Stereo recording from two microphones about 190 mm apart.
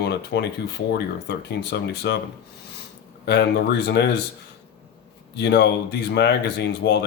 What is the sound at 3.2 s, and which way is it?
Speech, 60° left (ahead or behind).